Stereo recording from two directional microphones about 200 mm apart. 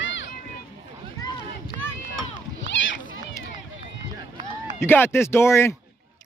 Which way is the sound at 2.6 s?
65° left (ahead or behind).